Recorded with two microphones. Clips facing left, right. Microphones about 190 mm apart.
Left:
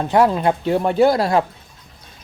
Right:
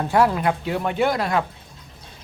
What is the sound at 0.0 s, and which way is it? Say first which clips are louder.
Speech: left 3 dB; 20° left (ahead or behind).